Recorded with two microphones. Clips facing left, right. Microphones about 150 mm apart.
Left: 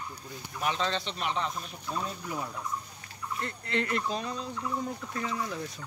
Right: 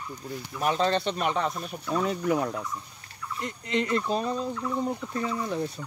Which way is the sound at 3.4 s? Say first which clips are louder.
Right 4 dB; 15° right (ahead or behind).